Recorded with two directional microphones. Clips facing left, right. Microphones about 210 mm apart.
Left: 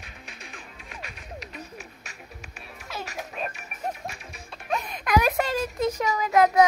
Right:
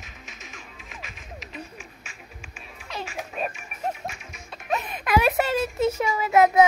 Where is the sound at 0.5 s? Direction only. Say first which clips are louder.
Left 1 dB; 40° left (ahead or behind).